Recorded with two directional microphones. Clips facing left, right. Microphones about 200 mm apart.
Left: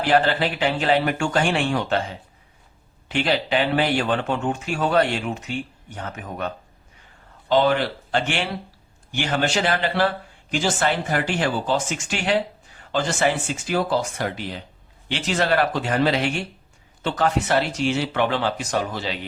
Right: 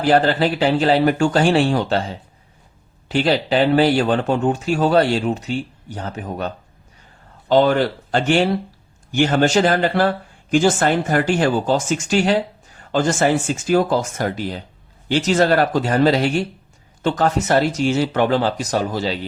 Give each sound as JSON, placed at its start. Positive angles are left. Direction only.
{"t": 0.0, "sound": "speech", "side_deg": -40}
{"t": 7.4, "sound": "speech", "side_deg": -45}